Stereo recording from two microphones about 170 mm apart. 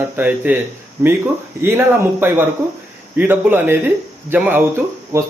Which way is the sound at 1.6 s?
15° right (ahead or behind).